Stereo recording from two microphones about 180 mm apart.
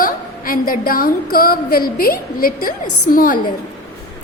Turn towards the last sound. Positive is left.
turn(degrees=50)  # may be behind; listen again after turning